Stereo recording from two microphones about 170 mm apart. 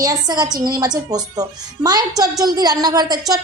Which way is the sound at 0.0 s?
25° right (ahead or behind).